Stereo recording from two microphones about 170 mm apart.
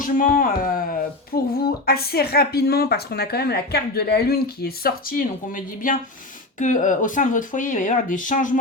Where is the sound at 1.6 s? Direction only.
65° left (ahead or behind).